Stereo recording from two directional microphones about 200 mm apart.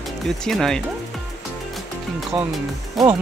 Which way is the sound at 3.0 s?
Centre (ahead or behind).